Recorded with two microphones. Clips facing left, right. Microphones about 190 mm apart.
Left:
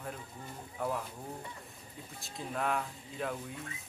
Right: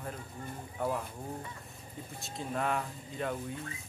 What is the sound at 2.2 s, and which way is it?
Speech, centre (ahead or behind).